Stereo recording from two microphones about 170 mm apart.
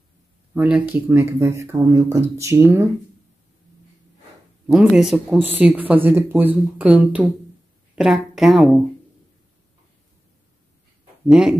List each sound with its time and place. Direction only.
0.6 s speech: 5° right (ahead or behind)
4.6 s a woman's voice: 5° right (ahead or behind)
11.2 s speech: 5° right (ahead or behind)